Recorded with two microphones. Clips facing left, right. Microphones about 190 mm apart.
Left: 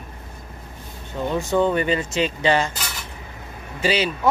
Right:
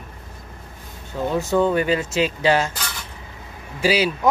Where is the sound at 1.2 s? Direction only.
5° right (ahead or behind).